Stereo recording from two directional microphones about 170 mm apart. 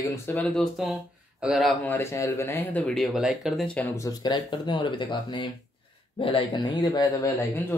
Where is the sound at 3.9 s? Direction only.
20° left (ahead or behind).